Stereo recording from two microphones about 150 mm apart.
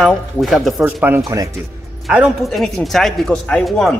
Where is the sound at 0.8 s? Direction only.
10° right (ahead or behind).